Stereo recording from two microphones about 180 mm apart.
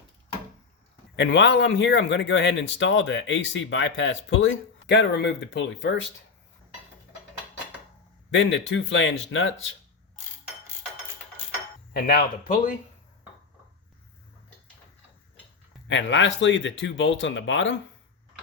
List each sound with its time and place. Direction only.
1.1 s speech: 80° left
8.3 s speech: 90° left
11.9 s speech: 60° left (ahead or behind)
15.9 s speech: 90° left